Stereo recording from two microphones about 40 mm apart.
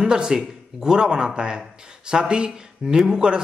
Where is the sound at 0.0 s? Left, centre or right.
Centre.